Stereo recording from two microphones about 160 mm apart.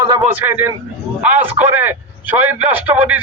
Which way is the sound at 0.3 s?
10° right (ahead or behind).